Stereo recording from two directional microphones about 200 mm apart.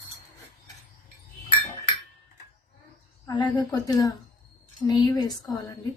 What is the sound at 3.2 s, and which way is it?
Speech, 20° left (ahead or behind).